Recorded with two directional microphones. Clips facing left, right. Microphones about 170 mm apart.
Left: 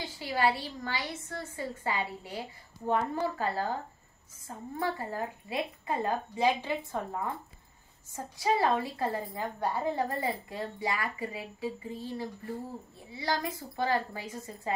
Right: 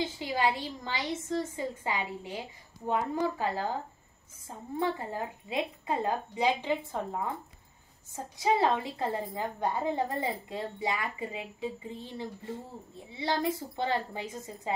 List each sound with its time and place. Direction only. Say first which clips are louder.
0.0 s a woman's voice: even; 20° right (ahead or behind)
4.7 s a woman's voice: right 2 dB; 20° right (ahead or behind)